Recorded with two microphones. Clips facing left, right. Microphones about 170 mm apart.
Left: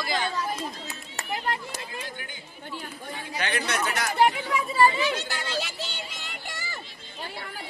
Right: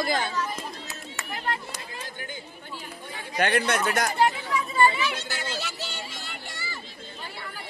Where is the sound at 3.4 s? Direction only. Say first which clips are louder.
Right 5 dB; 55° right (ahead or behind).